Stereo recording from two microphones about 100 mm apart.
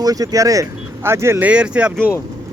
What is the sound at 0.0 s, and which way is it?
Speech, 40° right (ahead or behind).